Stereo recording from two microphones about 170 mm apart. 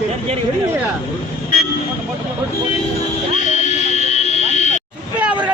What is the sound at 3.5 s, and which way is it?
Buzzer, 40° left (ahead or behind).